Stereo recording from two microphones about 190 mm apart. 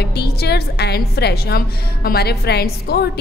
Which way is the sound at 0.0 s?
60° left (ahead or behind).